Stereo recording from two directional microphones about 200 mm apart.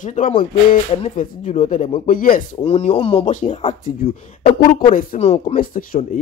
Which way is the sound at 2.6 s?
30° left (ahead or behind).